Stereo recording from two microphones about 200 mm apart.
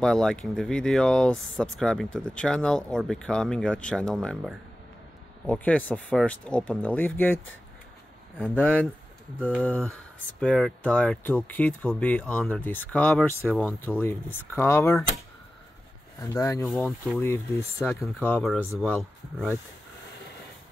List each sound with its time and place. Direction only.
0.0 s speech: 5° left (ahead or behind)
8.4 s speech: 10° left (ahead or behind)
16.2 s speech: 15° left (ahead or behind)
16.6 s speech: 5° left (ahead or behind)